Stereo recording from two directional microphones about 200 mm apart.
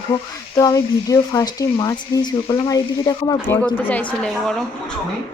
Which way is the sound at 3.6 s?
5° left (ahead or behind).